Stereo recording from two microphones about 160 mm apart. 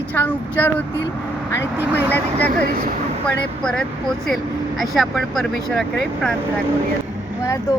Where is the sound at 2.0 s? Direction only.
10° left (ahead or behind).